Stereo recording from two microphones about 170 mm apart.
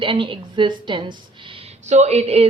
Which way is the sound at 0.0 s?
30° right (ahead or behind).